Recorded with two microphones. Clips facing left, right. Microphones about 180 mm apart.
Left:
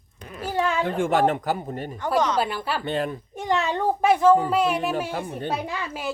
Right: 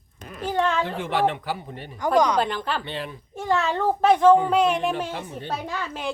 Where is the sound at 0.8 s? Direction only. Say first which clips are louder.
Left 3 dB; 45° left (ahead or behind).